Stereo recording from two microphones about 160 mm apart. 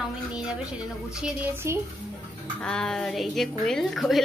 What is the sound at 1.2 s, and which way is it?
Speech, 15° right (ahead or behind).